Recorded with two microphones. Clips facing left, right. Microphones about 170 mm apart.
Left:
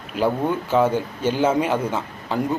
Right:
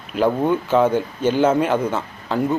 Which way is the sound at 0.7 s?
10° left (ahead or behind).